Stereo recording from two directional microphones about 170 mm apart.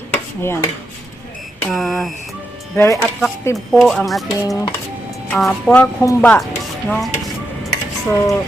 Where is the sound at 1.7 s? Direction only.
Centre (ahead or behind).